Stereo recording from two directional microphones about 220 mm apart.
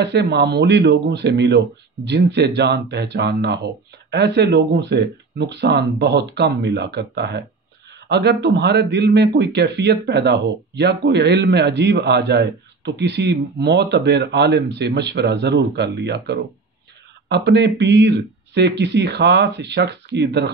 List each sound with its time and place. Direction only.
0.0 s a man's voice: 50° right (ahead or behind)